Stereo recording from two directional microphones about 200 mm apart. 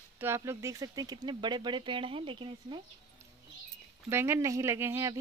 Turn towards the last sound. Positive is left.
turn(degrees=-15)  # may be behind; listen again after turning